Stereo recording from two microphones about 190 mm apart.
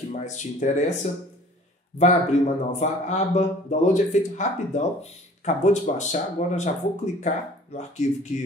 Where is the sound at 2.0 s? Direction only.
35° left (ahead or behind).